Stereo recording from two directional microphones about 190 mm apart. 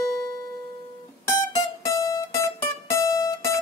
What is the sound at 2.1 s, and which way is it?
Music, 15° left (ahead or behind).